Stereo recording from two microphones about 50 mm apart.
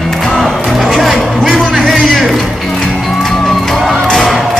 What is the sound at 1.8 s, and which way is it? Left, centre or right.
Music, centre.